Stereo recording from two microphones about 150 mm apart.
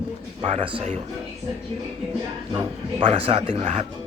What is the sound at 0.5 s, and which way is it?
Speech, 35° right (ahead or behind).